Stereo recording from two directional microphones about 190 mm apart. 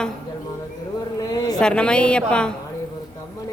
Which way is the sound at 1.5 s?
5° left (ahead or behind).